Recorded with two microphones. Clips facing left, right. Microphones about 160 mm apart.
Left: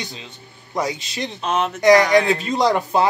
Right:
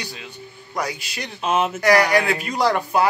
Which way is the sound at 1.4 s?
5° right (ahead or behind).